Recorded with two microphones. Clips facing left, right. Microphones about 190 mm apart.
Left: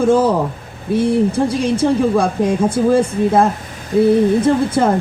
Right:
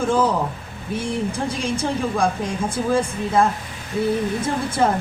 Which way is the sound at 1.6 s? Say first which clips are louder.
Left 8 dB; 60° left (ahead or behind).